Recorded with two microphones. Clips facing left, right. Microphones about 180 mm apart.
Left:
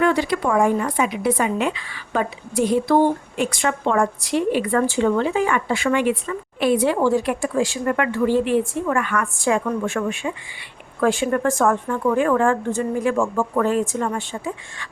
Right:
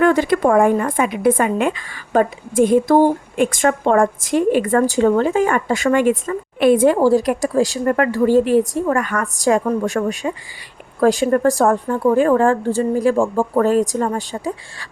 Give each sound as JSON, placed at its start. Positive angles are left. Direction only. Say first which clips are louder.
{"t": 0.0, "sound": "a woman's voice", "louder": "right 5 dB", "side_deg": -50}